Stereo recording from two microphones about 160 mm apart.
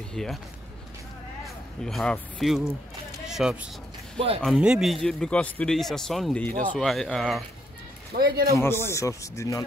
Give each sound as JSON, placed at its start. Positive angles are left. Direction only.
{"t": 0.1, "sound": "speech", "side_deg": 5}
{"t": 1.8, "sound": "speech", "side_deg": 0}
{"t": 8.1, "sound": "speech", "side_deg": -70}
{"t": 8.5, "sound": "speech", "side_deg": 15}